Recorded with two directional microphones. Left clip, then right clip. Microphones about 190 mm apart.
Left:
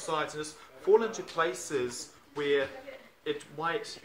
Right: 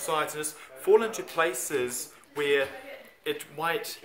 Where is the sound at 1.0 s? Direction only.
Centre (ahead or behind).